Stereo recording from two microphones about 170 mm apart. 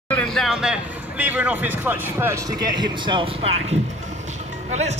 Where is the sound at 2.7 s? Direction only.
25° right (ahead or behind).